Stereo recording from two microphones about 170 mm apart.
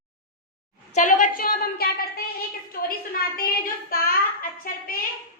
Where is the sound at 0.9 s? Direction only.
50° left (ahead or behind).